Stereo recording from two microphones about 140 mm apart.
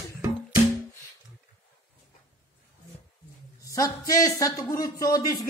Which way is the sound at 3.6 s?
25° left (ahead or behind).